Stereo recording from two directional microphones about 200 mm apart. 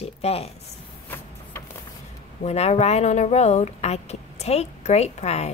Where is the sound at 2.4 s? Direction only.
30° left (ahead or behind).